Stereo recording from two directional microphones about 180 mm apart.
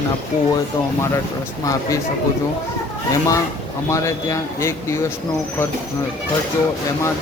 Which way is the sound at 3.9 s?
15° left (ahead or behind).